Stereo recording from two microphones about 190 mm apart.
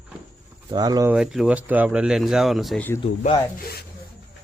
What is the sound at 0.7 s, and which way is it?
Speech, 20° right (ahead or behind).